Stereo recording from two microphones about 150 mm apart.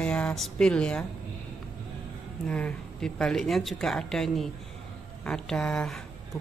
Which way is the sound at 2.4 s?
5° left (ahead or behind).